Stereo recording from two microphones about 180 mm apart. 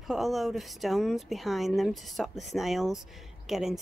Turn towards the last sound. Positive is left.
turn(degrees=0)  # may be behind; listen again after turning